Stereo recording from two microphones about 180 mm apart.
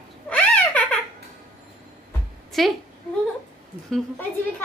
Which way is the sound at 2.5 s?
Centre (ahead or behind).